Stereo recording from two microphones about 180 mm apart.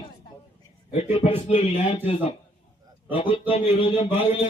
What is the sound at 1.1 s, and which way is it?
Speech, 35° left (ahead or behind).